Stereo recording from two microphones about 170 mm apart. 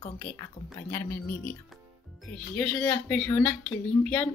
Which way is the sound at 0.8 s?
15° left (ahead or behind).